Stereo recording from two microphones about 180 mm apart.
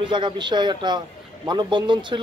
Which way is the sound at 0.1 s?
25° right (ahead or behind).